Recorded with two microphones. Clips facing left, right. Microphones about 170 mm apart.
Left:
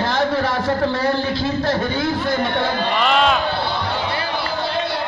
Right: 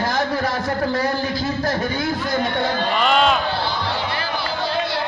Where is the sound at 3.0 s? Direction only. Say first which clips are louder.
Even; centre (ahead or behind).